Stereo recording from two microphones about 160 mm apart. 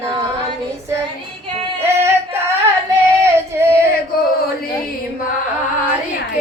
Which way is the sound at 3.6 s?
15° right (ahead or behind).